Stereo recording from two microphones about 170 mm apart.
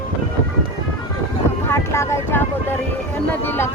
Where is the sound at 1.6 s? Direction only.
15° left (ahead or behind).